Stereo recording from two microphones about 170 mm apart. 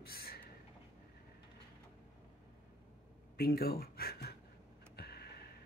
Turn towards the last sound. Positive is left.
turn(degrees=70)  # may be behind; listen again after turning